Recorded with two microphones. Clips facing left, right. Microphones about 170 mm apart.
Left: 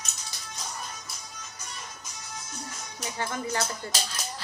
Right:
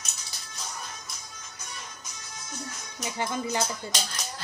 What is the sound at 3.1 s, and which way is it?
Speech, 15° right (ahead or behind).